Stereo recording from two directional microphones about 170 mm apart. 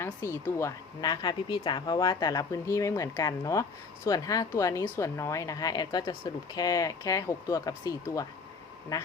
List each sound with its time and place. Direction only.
0.0 s a woman's voice: 15° left (ahead or behind)